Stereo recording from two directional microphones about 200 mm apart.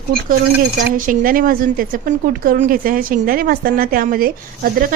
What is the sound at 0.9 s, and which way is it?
A woman's voice, 45° right (ahead or behind).